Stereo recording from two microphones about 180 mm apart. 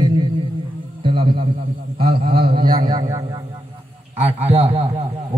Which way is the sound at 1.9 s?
30° right (ahead or behind).